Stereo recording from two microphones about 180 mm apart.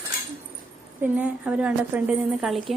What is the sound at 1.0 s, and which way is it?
A woman's voice, 10° right (ahead or behind).